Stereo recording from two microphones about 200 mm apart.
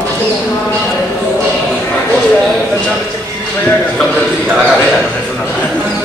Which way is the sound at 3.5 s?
5° left (ahead or behind).